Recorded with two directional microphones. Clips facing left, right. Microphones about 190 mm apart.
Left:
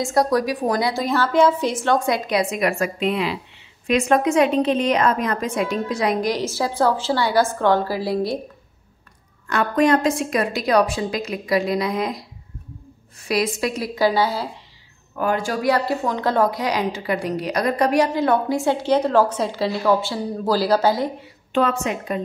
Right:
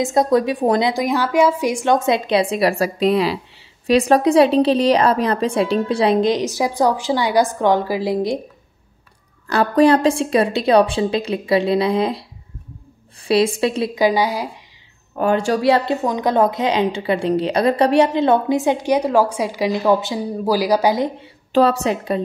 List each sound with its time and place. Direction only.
0.0 s a woman's voice: 20° right (ahead or behind)
9.5 s a woman's voice: 35° right (ahead or behind); by 21.1 s 15° right (ahead or behind)
21.5 s a woman's voice: 35° right (ahead or behind)